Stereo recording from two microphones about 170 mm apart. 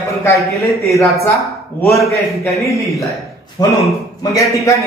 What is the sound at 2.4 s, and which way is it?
Speech, 15° left (ahead or behind).